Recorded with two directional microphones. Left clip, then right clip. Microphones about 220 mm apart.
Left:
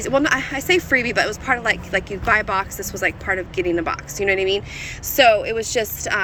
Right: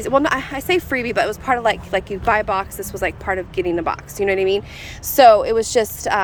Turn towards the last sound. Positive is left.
turn(degrees=-20)  # may be behind; listen again after turning